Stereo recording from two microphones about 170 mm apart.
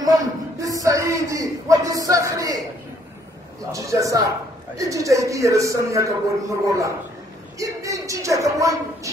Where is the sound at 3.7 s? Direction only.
20° right (ahead or behind).